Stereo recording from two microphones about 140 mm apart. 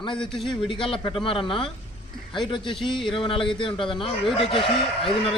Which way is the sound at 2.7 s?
5° left (ahead or behind).